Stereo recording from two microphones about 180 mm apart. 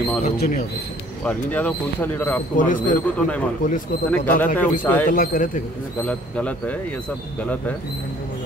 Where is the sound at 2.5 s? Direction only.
45° left (ahead or behind).